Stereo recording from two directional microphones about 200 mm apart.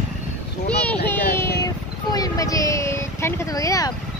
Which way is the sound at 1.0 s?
10° left (ahead or behind).